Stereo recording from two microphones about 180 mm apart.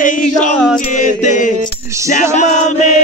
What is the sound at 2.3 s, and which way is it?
Speech, 40° left (ahead or behind).